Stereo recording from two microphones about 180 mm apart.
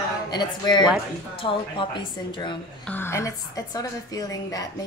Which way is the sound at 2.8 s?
10° left (ahead or behind).